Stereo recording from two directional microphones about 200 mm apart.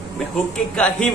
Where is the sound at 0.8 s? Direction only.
5° left (ahead or behind).